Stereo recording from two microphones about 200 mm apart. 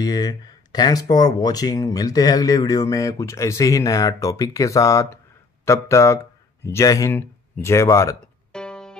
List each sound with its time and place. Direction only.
0.0 s speech: 20° left (ahead or behind)
8.5 s music: 5° left (ahead or behind)